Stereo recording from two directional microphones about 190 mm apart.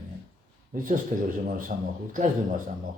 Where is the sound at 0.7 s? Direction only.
45° right (ahead or behind).